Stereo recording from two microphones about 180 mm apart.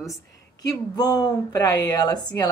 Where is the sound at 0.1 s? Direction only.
20° left (ahead or behind).